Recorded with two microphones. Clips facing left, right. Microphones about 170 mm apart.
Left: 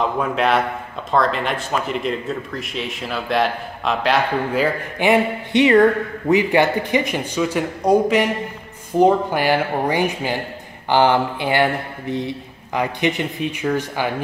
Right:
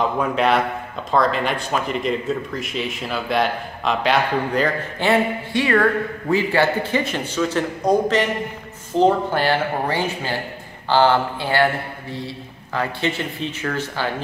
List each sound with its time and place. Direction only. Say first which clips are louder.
0.2 s speech: even; centre (ahead or behind)